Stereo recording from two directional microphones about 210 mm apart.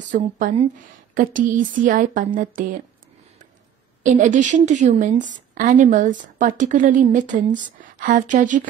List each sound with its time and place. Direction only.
0.1 s a woman's voice: 40° right (ahead or behind)
4.0 s a woman's voice: 35° right (ahead or behind)